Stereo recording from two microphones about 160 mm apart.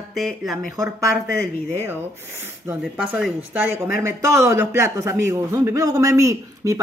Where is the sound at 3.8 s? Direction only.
20° right (ahead or behind).